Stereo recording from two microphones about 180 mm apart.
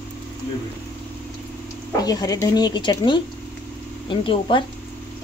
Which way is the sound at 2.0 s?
20° left (ahead or behind).